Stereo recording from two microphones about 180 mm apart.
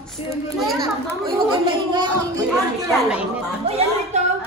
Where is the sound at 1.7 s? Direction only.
25° right (ahead or behind).